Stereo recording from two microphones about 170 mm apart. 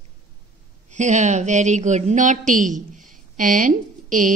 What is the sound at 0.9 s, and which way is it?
A woman's voice, 45° right (ahead or behind).